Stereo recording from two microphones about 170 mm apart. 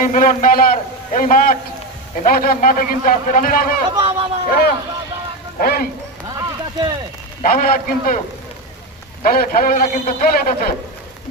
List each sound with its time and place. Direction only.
0.0 s a man's voice: 50° left (ahead or behind)
3.9 s speech: 30° right (ahead or behind)
4.4 s a man's voice: 60° left (ahead or behind)
6.2 s a sound: 25° right (ahead or behind)
7.4 s a man's voice: 55° left (ahead or behind)
9.2 s a man's voice: 60° left (ahead or behind)